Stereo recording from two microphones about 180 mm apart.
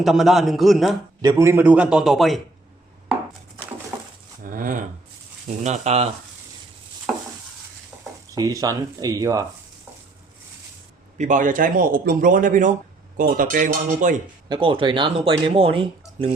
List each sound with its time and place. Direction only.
0.0 s a man's voice: centre (ahead or behind)
1.2 s a man's voice: 20° right (ahead or behind); by 2.4 s centre (ahead or behind)
4.4 s a sound: 50° right (ahead or behind)
5.6 s speech: 40° right (ahead or behind)
7.1 s stir: 5° right (ahead or behind)
8.4 s speech: 20° right (ahead or behind)
11.2 s a man's voice: 45° right (ahead or behind)
14.5 s speech: 25° right (ahead or behind)